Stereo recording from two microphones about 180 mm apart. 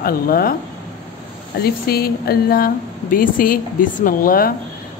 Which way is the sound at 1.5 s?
60° left (ahead or behind).